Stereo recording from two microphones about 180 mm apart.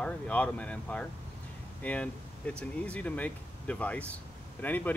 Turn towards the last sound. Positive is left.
turn(degrees=10)  # may be behind; listen again after turning